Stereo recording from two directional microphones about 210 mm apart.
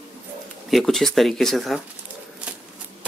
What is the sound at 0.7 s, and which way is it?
Speech, centre (ahead or behind).